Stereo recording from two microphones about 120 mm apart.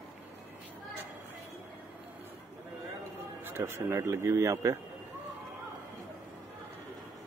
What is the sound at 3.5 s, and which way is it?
Speech, 25° right (ahead or behind).